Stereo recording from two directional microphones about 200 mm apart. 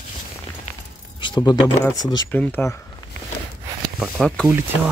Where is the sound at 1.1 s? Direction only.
25° left (ahead or behind).